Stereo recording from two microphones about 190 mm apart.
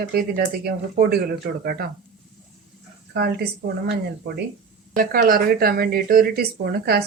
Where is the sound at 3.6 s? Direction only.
45° right (ahead or behind).